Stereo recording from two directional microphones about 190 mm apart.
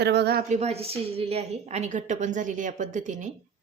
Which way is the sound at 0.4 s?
35° right (ahead or behind).